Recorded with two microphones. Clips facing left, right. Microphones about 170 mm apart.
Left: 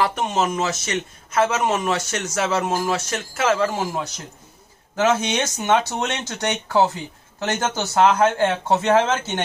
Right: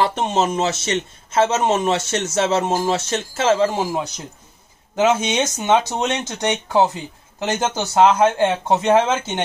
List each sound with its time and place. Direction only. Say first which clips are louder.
0.0 s a man's voice: right 2 dB; 30° right (ahead or behind)